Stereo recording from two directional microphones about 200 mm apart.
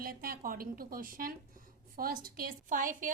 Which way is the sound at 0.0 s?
45° right (ahead or behind).